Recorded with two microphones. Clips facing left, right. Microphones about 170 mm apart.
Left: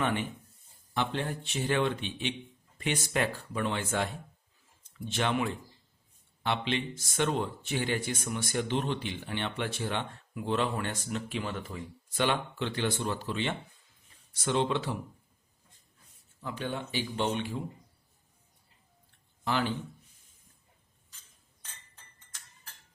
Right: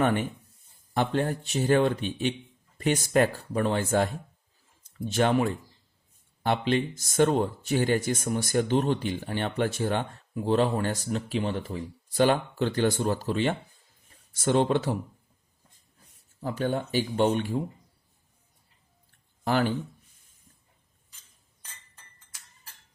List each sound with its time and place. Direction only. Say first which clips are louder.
0.0 s a man's voice: right 6 dB; 45° right (ahead or behind)
16.4 s a man's voice: right 7 dB; 40° right (ahead or behind)
19.5 s a man's voice: right 5 dB; 45° right (ahead or behind)